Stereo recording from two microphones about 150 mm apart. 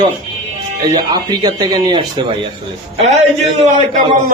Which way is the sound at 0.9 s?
30° right (ahead or behind).